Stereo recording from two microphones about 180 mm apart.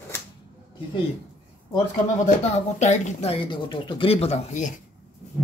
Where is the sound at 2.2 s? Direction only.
40° left (ahead or behind).